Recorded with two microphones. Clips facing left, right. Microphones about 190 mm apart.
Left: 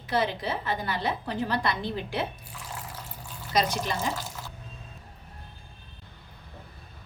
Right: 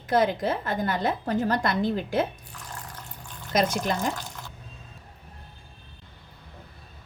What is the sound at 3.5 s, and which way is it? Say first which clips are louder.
Speech: right 3 dB; 50° right (ahead or behind).